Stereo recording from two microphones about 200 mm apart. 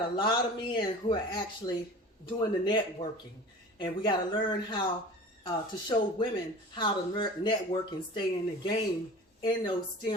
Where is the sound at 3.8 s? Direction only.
25° left (ahead or behind).